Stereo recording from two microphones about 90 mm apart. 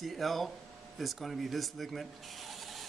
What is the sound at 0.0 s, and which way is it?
Speech, centre (ahead or behind).